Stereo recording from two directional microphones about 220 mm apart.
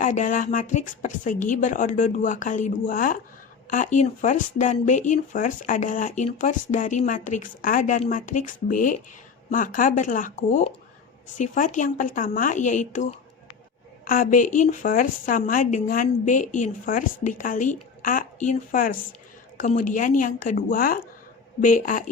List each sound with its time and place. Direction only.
0.0 s speech: 35° left (ahead or behind)